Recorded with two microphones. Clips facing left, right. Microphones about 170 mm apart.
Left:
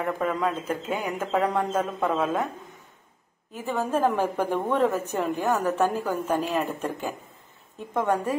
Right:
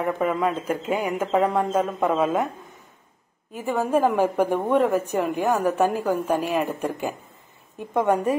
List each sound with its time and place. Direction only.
0.0 s a woman's voice: 10° right (ahead or behind)
3.5 s a woman's voice: 10° right (ahead or behind)